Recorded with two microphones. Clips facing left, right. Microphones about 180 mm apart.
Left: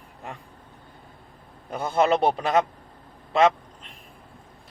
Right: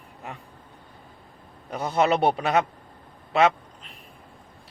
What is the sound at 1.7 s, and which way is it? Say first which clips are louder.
Speech: left 1 dB; centre (ahead or behind).